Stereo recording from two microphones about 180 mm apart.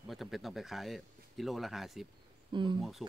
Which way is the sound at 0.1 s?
Centre (ahead or behind).